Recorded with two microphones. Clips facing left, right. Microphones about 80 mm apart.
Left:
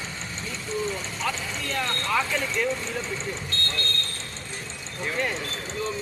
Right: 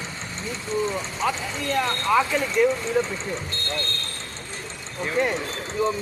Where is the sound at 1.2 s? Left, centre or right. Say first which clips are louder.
Right 5 dB; centre.